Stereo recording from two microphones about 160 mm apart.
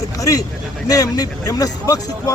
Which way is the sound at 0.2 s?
20° left (ahead or behind).